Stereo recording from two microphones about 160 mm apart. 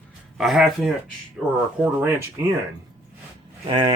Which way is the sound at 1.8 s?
15° right (ahead or behind).